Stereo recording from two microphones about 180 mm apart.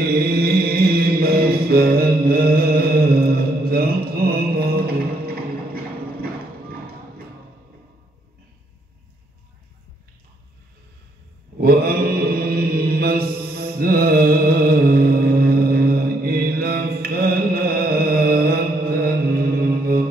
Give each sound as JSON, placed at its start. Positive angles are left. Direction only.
{"t": 0.3, "sound": "chant", "side_deg": -55}
{"t": 11.6, "sound": "mantra", "side_deg": -55}